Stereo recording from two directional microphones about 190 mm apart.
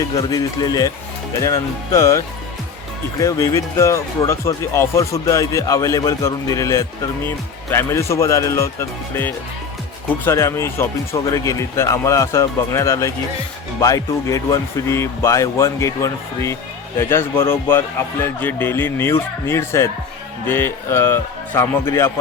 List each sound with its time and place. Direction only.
0.2 s speech: 20° left (ahead or behind)